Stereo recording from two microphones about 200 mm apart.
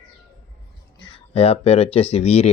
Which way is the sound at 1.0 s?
30° left (ahead or behind).